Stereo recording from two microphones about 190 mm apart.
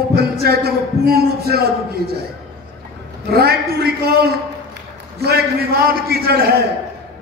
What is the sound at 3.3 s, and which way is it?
A man's voice, 55° right (ahead or behind).